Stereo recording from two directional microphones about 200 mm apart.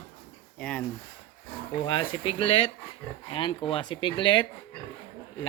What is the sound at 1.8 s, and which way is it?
Speech, 25° left (ahead or behind).